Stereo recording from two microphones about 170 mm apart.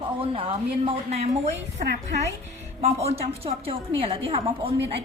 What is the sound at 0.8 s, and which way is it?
A woman's voice, 40° right (ahead or behind).